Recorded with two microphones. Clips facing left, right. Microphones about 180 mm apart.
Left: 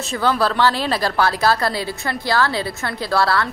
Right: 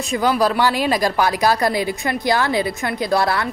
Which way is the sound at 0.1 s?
15° right (ahead or behind).